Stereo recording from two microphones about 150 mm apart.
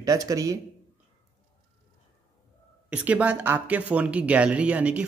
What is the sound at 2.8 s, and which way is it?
Speech, 10° right (ahead or behind).